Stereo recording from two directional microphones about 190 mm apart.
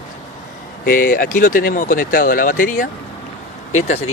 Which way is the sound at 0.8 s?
45° left (ahead or behind).